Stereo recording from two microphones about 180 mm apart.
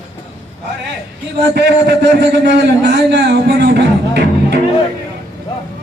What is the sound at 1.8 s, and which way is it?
Speech, 70° right (ahead or behind).